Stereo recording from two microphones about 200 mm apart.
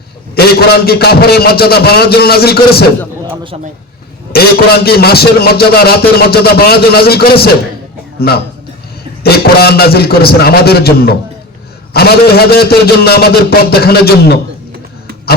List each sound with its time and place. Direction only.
0.3 s a man's voice: 50° left (ahead or behind)
4.3 s a man's voice: 50° left (ahead or behind)